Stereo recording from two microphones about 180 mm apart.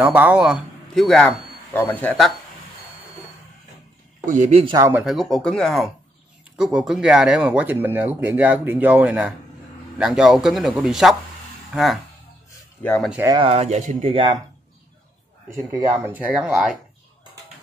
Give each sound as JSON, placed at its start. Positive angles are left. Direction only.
{"t": 0.0, "sound": "a man's voice", "side_deg": -10}
{"t": 4.3, "sound": "speech", "side_deg": -40}
{"t": 4.7, "sound": "speech", "side_deg": -15}
{"t": 5.0, "sound": "speech", "side_deg": 0}
{"t": 13.2, "sound": "speech", "side_deg": -20}
{"t": 13.5, "sound": "speech", "side_deg": -35}
{"t": 15.5, "sound": "speech", "side_deg": -20}